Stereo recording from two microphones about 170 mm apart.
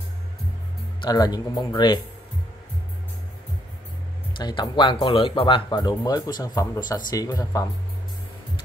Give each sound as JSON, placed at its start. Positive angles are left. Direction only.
{"t": 1.0, "sound": "speech", "side_deg": 25}
{"t": 4.4, "sound": "speech", "side_deg": 25}